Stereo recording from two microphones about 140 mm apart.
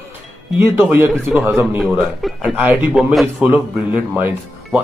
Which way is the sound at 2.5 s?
10° right (ahead or behind).